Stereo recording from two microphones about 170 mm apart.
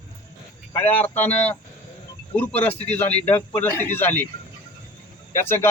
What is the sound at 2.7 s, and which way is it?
Speech, 40° left (ahead or behind).